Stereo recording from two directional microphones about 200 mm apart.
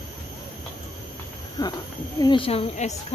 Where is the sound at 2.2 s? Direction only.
25° left (ahead or behind).